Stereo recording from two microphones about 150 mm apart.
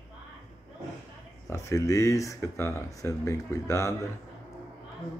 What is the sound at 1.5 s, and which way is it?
Speech, 20° left (ahead or behind).